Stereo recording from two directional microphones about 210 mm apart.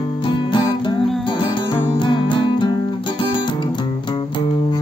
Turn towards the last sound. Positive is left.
turn(degrees=20)  # may be behind; listen again after turning